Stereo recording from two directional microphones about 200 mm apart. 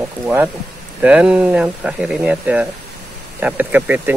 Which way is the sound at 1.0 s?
5° right (ahead or behind).